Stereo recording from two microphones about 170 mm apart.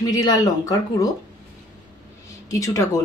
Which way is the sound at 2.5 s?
20° left (ahead or behind).